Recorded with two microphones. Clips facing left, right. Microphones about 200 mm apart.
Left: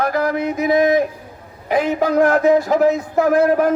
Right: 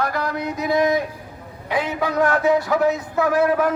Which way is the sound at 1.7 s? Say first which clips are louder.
Left 6 dB; 45° left (ahead or behind).